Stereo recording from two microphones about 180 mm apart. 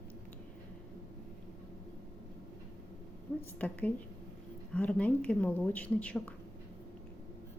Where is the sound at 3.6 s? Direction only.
10° left (ahead or behind).